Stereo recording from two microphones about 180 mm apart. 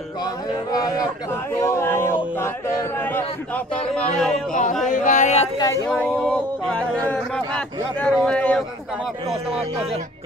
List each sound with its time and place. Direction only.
0.2 s a sound: 20° left (ahead or behind); by 4.6 s 5° left (ahead or behind)
4.8 s speech: 45° left (ahead or behind)
5.9 s speech: 5° left (ahead or behind)